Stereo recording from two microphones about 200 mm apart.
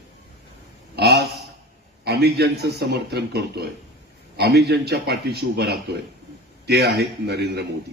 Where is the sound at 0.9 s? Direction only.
55° right (ahead or behind).